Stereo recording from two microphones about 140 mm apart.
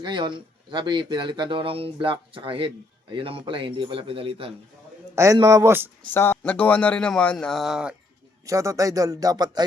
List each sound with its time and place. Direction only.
0.0 s speech: 35° right (ahead or behind)
5.1 s speech: 25° right (ahead or behind)
6.1 s a man's voice: 15° left (ahead or behind); by 7.9 s 5° right (ahead or behind)
8.4 s speech: 25° right (ahead or behind)